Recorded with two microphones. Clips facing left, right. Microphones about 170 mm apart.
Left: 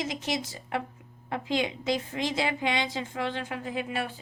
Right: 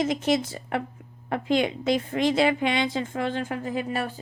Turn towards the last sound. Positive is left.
turn(degrees=-40)  # may be behind; listen again after turning